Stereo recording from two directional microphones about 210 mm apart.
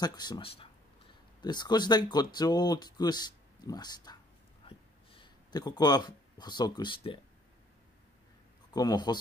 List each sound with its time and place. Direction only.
0.0 s speech: 20° left (ahead or behind)
4.6 s a sound: 25° left (ahead or behind)
8.7 s speech: 20° left (ahead or behind)